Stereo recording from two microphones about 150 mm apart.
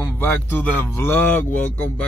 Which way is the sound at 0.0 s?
15° left (ahead or behind).